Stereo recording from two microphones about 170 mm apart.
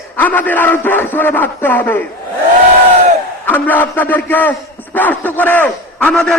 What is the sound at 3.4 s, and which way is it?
A man's voice, 10° left (ahead or behind).